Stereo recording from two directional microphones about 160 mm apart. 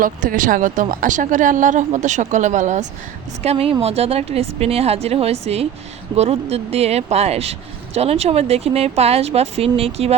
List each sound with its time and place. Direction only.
0.0 s speech: 60° right (ahead or behind)
3.4 s speech: 40° right (ahead or behind)